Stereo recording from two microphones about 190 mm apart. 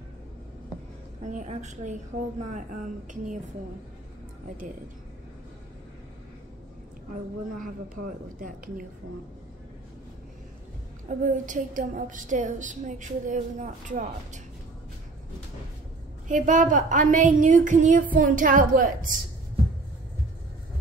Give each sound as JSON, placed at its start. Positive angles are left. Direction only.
{"t": 1.2, "sound": "a woman's voice", "side_deg": -40}
{"t": 7.5, "sound": "a woman's voice", "side_deg": -45}
{"t": 11.1, "sound": "a woman's voice", "side_deg": -40}
{"t": 16.3, "sound": "a woman's voice", "side_deg": -40}